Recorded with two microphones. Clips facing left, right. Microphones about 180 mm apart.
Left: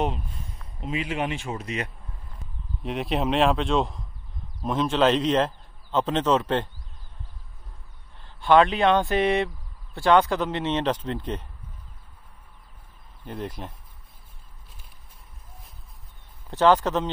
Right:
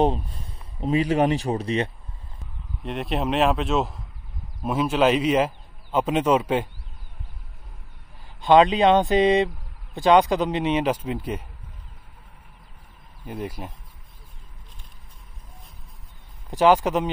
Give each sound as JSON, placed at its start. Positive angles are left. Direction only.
{"t": 0.0, "sound": "speech", "side_deg": -35}
{"t": 2.8, "sound": "a man's voice", "side_deg": 0}
{"t": 8.4, "sound": "a man's voice", "side_deg": -20}
{"t": 13.2, "sound": "a man's voice", "side_deg": -10}
{"t": 16.4, "sound": "a man's voice", "side_deg": -10}